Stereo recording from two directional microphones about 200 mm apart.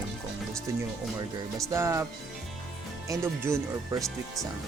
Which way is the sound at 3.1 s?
15° right (ahead or behind).